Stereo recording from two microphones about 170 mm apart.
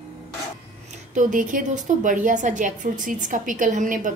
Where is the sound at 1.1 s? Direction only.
50° right (ahead or behind).